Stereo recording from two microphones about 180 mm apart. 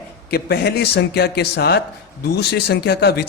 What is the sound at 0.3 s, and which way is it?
A man's voice, 60° left (ahead or behind).